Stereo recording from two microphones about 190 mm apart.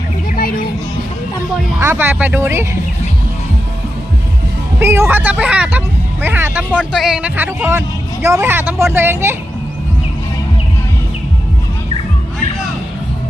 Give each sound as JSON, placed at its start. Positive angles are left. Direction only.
{"t": 0.3, "sound": "music", "side_deg": 50}
{"t": 1.8, "sound": "speech", "side_deg": -10}
{"t": 4.8, "sound": "speech", "side_deg": -15}